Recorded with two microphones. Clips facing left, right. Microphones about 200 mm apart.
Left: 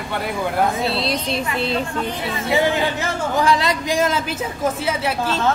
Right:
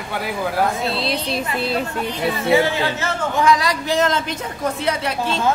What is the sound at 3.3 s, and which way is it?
A man's voice, 30° left (ahead or behind).